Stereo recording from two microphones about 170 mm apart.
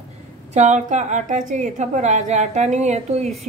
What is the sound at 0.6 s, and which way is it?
A woman's voice, 45° right (ahead or behind).